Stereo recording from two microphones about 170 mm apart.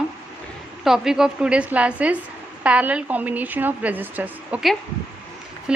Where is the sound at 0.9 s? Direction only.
5° right (ahead or behind).